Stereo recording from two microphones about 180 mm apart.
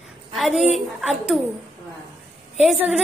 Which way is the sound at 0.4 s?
Centre (ahead or behind).